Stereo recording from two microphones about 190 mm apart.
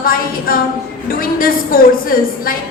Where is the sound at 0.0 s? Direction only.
50° left (ahead or behind).